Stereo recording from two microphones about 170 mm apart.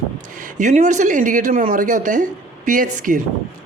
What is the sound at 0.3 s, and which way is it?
Speech, 50° right (ahead or behind).